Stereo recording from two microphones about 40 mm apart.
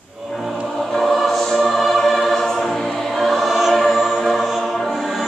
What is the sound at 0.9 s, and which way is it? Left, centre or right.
Choir, centre.